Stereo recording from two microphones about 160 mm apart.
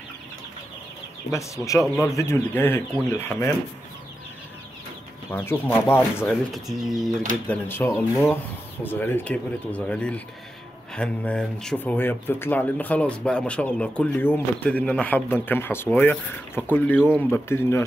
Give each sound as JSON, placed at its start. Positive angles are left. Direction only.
{"t": 1.3, "sound": "speech", "side_deg": 20}
{"t": 5.3, "sound": "speech", "side_deg": 15}
{"t": 6.5, "sound": "speech", "side_deg": 0}
{"t": 7.4, "sound": "speech", "side_deg": 15}